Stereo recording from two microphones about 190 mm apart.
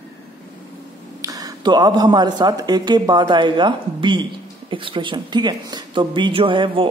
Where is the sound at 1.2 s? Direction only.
20° right (ahead or behind).